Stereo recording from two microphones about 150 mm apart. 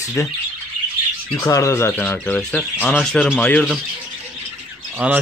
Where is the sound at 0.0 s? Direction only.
20° left (ahead or behind).